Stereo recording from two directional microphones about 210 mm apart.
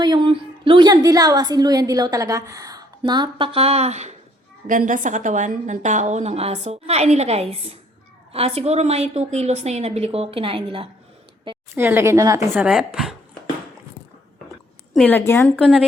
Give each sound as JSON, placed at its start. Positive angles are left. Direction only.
{"t": 0.0, "sound": "a woman's voice", "side_deg": -20}
{"t": 11.7, "sound": "a woman's voice", "side_deg": -10}
{"t": 12.6, "sound": "speech", "side_deg": -5}
{"t": 14.9, "sound": "a woman's voice", "side_deg": 10}